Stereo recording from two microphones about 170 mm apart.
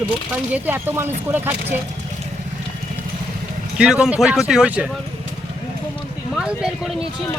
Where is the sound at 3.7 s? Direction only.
5° right (ahead or behind).